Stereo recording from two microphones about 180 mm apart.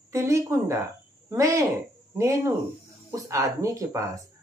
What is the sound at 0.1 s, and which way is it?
Speech, 15° right (ahead or behind).